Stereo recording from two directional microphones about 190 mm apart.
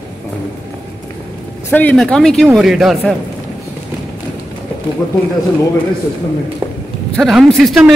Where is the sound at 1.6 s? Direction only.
10° left (ahead or behind).